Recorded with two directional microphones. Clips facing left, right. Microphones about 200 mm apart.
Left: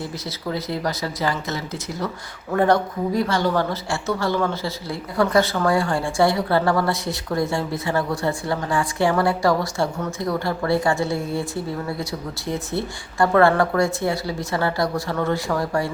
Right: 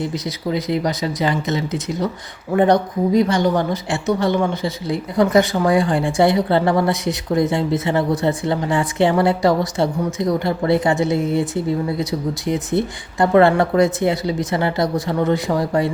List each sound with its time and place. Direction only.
0.0 s a woman's voice: 20° right (ahead or behind)